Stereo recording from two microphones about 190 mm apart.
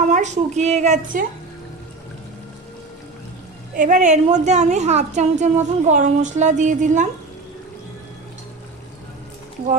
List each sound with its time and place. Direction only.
0.1 s a woman's voice: 35° right (ahead or behind)
3.7 s a woman's voice: 40° right (ahead or behind)